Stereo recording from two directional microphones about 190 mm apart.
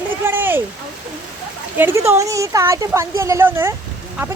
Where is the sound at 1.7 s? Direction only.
10° right (ahead or behind).